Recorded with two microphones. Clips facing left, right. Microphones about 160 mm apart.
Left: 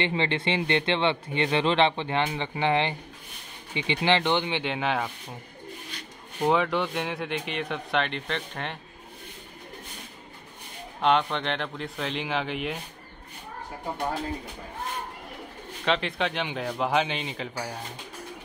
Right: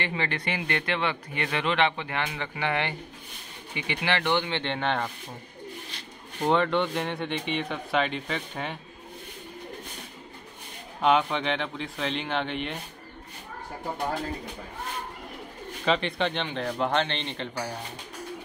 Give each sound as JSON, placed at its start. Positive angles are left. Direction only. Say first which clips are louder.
{"t": 0.0, "sound": "speech", "louder": "left 4 dB", "side_deg": 25}
{"t": 6.4, "sound": "speech", "louder": "even", "side_deg": 5}
{"t": 11.0, "sound": "speech", "louder": "right 1 dB", "side_deg": -5}
{"t": 15.8, "sound": "speech", "louder": "right 1 dB", "side_deg": 0}